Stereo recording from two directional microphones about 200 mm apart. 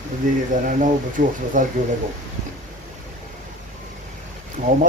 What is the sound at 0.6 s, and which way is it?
A man's voice, 40° right (ahead or behind).